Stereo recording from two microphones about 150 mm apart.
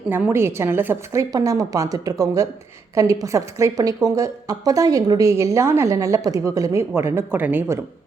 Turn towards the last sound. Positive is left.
turn(degrees=-15)  # may be behind; listen again after turning